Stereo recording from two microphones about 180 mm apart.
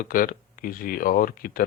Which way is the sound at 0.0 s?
50° left (ahead or behind).